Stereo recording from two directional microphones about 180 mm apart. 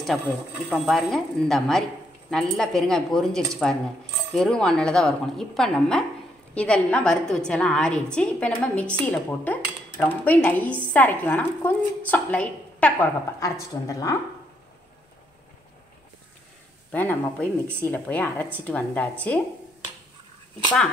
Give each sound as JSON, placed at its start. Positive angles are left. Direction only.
{"t": 0.7, "sound": "a woman's voice", "side_deg": 0}
{"t": 13.4, "sound": "a woman's voice", "side_deg": 20}
{"t": 16.9, "sound": "a woman's voice", "side_deg": 10}